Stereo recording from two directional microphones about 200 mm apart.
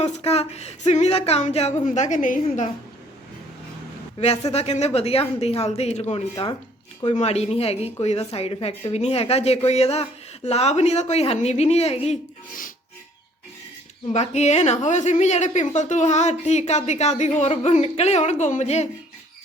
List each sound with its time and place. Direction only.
0.0 s a woman's voice: 30° left (ahead or behind)
4.2 s a woman's voice: 35° left (ahead or behind)
6.3 s a woman's voice: 20° left (ahead or behind)
7.0 s a woman's voice: 35° left (ahead or behind)
14.1 s a woman's voice: 35° left (ahead or behind)